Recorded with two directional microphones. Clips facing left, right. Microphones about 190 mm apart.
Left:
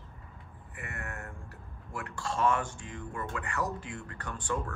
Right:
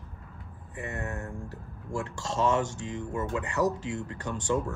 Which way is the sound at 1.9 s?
50° right (ahead or behind).